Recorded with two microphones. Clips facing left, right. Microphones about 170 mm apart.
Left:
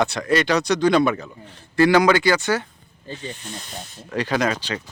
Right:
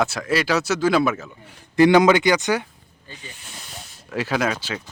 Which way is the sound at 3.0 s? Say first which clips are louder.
Left 9 dB; 35° left (ahead or behind).